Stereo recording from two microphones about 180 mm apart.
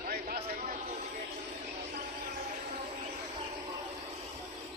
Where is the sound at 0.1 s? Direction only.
60° right (ahead or behind).